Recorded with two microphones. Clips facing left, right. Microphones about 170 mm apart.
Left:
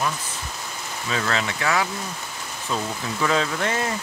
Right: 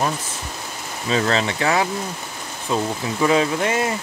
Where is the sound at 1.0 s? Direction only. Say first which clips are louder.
Right 6 dB; 30° right (ahead or behind).